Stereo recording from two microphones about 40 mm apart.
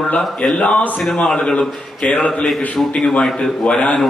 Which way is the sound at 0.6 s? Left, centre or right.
Left.